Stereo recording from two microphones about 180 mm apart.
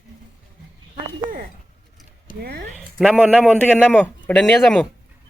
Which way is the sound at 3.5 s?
5° left (ahead or behind).